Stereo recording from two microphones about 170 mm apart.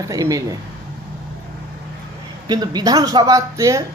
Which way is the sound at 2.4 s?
25° right (ahead or behind).